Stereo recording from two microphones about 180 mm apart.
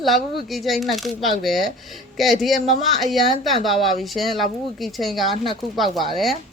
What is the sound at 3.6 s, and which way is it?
Speech, centre (ahead or behind).